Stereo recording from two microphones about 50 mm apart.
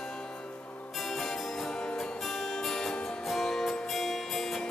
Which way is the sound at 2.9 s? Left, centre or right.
Centre.